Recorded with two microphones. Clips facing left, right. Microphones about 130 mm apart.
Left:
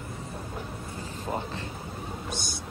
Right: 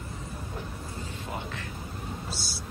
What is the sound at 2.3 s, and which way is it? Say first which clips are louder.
Vehicle: left 3 dB; 20° left (ahead or behind).